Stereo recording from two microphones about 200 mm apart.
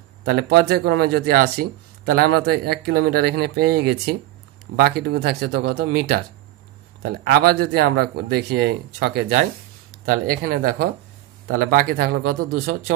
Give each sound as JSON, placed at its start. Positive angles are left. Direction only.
{"t": 0.2, "sound": "speech", "side_deg": -50}
{"t": 7.2, "sound": "speech", "side_deg": -55}